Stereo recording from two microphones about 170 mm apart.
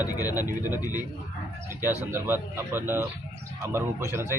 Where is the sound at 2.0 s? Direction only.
15° right (ahead or behind).